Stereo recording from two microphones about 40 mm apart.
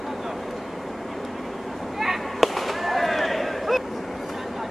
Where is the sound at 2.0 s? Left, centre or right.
Centre.